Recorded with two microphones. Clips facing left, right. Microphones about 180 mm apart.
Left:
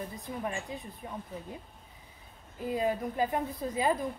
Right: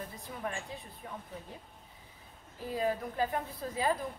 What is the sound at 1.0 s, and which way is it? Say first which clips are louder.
Speech: left 2 dB; 20° left (ahead or behind).